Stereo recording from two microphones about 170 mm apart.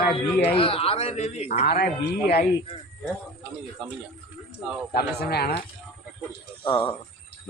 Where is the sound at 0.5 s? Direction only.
30° left (ahead or behind).